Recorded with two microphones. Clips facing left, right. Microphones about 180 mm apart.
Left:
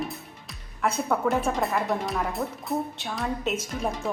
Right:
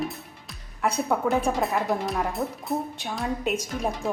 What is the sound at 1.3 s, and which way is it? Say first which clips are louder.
Music: right 1 dB; centre (ahead or behind).